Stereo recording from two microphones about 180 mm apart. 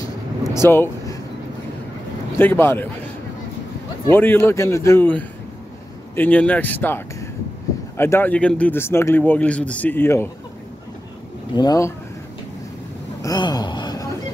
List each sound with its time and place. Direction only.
0.7 s speech: 10° left (ahead or behind)
2.3 s speech: 10° left (ahead or behind)
4.1 s speech: 10° left (ahead or behind)
11.5 s speech: 20° left (ahead or behind)
13.2 s a sound: 20° left (ahead or behind)